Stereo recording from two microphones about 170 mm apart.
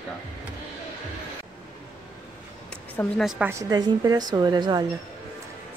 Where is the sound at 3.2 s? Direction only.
Centre (ahead or behind).